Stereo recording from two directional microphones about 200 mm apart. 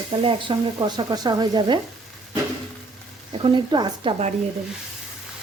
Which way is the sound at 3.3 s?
25° right (ahead or behind).